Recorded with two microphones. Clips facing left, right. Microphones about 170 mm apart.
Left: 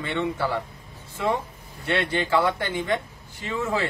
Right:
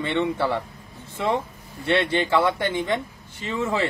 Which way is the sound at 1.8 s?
25° right (ahead or behind).